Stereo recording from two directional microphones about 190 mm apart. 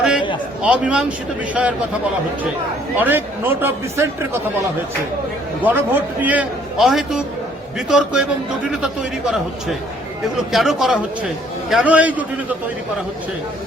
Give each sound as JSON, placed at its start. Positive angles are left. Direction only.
{"t": 0.0, "sound": "a sound", "side_deg": -5}
{"t": 0.6, "sound": "speech", "side_deg": -5}
{"t": 3.0, "sound": "speech", "side_deg": -10}
{"t": 5.6, "sound": "a man's voice", "side_deg": -10}